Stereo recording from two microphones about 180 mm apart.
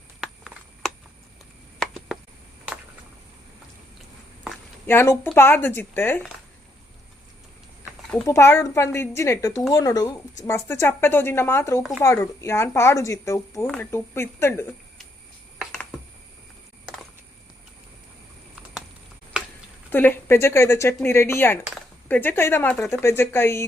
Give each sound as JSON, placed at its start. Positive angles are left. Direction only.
{"t": 0.2, "sound": "a sound", "side_deg": 0}
{"t": 4.9, "sound": "speech", "side_deg": 10}
{"t": 8.1, "sound": "speech", "side_deg": 15}
{"t": 11.8, "sound": "speech", "side_deg": 0}
{"t": 12.0, "sound": "speech", "side_deg": 15}
{"t": 19.9, "sound": "speech", "side_deg": 10}